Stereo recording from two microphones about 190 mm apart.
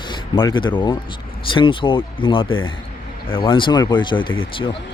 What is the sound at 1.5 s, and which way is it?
Speech, 25° left (ahead or behind).